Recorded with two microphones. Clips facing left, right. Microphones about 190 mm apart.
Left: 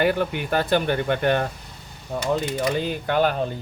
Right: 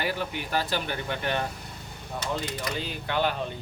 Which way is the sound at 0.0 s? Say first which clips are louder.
Left 9 dB; 55° left (ahead or behind).